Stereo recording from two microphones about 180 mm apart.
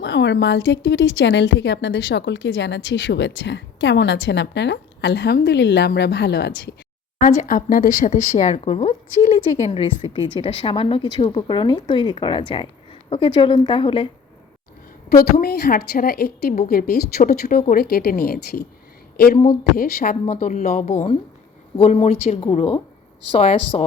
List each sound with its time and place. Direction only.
0.0 s a woman's voice: 75° left (ahead or behind)
7.2 s a woman's voice: 45° left (ahead or behind); by 14.1 s 30° left (ahead or behind)
15.1 s a woman's voice: 60° left (ahead or behind); by 23.8 s 35° left (ahead or behind)